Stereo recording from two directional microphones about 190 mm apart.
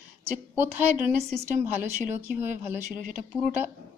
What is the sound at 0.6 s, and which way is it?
Speech, 10° right (ahead or behind).